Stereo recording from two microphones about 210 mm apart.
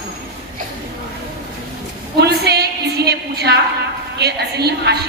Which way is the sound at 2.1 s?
50° right (ahead or behind).